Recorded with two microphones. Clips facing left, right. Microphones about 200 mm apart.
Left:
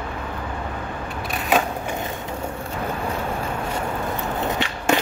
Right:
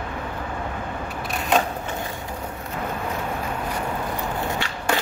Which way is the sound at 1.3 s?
5° left (ahead or behind).